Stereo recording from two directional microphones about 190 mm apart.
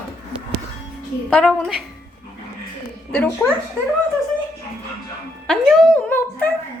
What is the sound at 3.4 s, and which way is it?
Speech, 10° left (ahead or behind).